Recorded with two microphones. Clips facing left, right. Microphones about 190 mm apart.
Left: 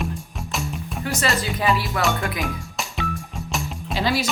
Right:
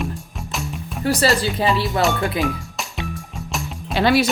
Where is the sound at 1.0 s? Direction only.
35° right (ahead or behind).